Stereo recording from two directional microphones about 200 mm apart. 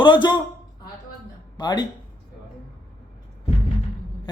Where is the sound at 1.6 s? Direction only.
20° left (ahead or behind).